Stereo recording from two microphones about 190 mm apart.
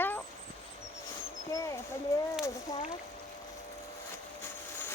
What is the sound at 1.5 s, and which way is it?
Speech, 15° left (ahead or behind).